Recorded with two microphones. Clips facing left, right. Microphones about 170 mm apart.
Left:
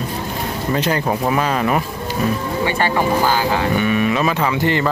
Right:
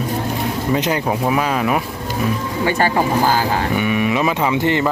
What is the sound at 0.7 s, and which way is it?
Speech, 15° right (ahead or behind).